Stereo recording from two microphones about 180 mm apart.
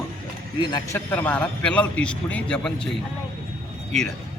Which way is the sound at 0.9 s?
10° left (ahead or behind).